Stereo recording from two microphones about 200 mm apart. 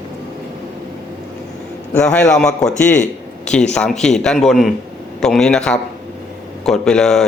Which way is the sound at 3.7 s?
5° left (ahead or behind).